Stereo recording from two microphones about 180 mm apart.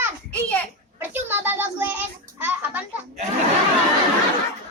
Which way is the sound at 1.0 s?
10° right (ahead or behind).